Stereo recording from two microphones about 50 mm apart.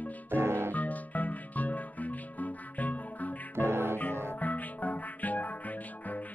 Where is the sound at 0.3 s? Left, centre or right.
Right.